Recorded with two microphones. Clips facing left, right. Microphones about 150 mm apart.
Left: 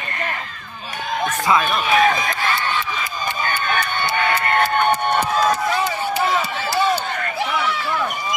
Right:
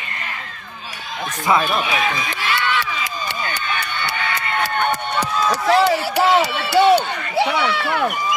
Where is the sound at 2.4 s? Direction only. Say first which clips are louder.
Right 1 dB; 75° right (ahead or behind).